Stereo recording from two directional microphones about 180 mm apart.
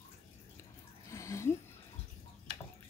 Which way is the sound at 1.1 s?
15° left (ahead or behind).